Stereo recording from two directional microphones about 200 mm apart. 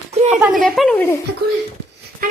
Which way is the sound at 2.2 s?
45° right (ahead or behind).